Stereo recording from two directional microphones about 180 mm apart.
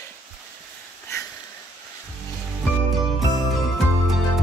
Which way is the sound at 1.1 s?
15° left (ahead or behind).